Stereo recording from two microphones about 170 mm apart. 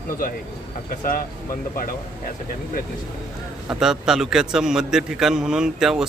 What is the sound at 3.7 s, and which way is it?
A man's voice, 5° right (ahead or behind).